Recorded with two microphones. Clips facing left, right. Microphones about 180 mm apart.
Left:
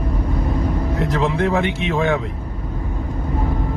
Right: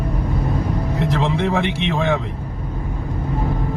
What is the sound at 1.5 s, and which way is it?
Speech, 20° left (ahead or behind).